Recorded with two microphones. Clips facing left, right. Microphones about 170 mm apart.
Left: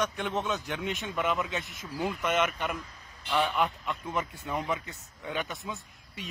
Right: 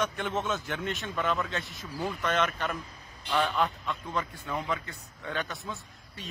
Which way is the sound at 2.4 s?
Centre (ahead or behind).